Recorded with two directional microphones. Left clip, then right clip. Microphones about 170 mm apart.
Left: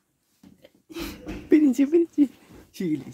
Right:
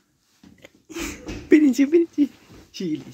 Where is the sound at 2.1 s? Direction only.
20° left (ahead or behind).